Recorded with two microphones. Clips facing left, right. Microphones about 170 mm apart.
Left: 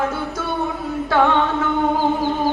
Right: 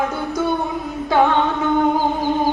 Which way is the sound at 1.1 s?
15° right (ahead or behind).